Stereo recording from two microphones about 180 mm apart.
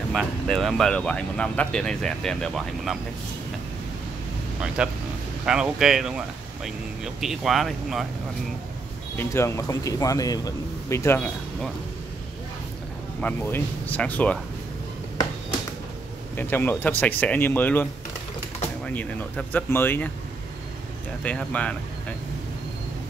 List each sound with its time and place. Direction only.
0.1 s speech: centre (ahead or behind)
4.8 s speech: 5° right (ahead or behind)
9.1 s speech: 15° left (ahead or behind)
13.2 s speech: 10° left (ahead or behind)
16.3 s speech: 10° left (ahead or behind)
18.9 s speech: 10° left (ahead or behind)
21.2 s speech: 5° left (ahead or behind)